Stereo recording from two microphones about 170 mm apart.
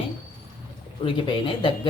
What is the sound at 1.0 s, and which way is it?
Speech, 30° left (ahead or behind).